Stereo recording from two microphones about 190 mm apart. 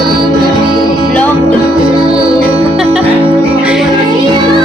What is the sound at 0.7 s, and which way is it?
Music, 25° right (ahead or behind).